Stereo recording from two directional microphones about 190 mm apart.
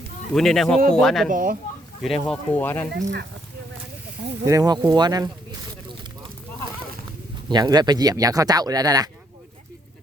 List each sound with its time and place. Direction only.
0.3 s speech: centre (ahead or behind)
1.3 s speech: 45° right (ahead or behind)
2.0 s speech: centre (ahead or behind)
2.9 s speech: 65° right (ahead or behind)
4.4 s speech: 20° right (ahead or behind)
7.4 s speech: 20° right (ahead or behind)